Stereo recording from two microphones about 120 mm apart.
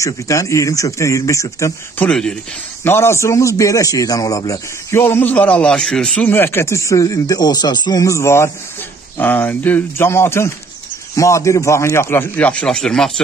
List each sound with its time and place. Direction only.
0.0 s speech: 25° left (ahead or behind)
2.0 s speech: 5° left (ahead or behind)
2.8 s speech: 20° left (ahead or behind); by 6.2 s 5° left (ahead or behind)
6.2 s speech: 20° left (ahead or behind)